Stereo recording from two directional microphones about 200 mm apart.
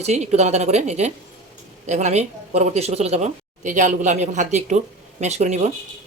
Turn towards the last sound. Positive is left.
turn(degrees=-35)  # may be behind; listen again after turning